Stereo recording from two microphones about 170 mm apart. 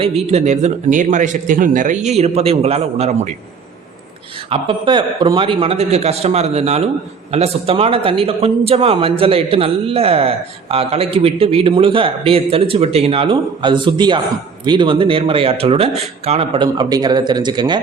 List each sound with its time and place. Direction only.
0.0 s a man's voice: 40° right (ahead or behind)
4.4 s a man's voice: 35° right (ahead or behind)